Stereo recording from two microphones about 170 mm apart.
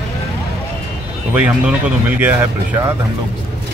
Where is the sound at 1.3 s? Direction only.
10° right (ahead or behind).